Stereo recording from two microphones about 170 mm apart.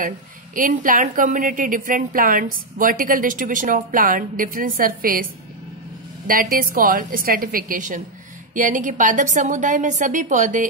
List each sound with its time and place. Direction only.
0.6 s a woman's voice: 50° right (ahead or behind)
6.2 s a woman's voice: 55° right (ahead or behind)